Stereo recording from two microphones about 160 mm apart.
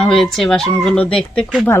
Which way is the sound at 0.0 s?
5° left (ahead or behind).